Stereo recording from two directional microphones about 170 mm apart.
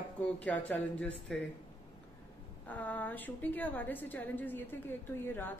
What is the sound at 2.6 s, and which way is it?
A woman's voice, 10° left (ahead or behind).